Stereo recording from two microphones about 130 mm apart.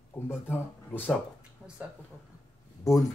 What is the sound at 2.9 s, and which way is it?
Speech, 25° left (ahead or behind).